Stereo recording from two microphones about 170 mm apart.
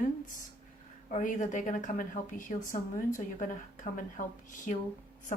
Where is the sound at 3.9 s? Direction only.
50° left (ahead or behind).